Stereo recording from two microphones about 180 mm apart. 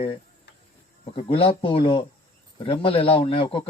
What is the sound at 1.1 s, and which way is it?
Speech, 30° left (ahead or behind).